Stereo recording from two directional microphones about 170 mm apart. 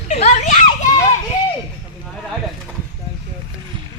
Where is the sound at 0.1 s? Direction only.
45° left (ahead or behind).